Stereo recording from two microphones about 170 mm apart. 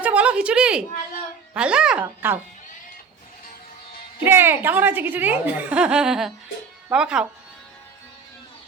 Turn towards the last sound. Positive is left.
turn(degrees=-5)  # may be behind; listen again after turning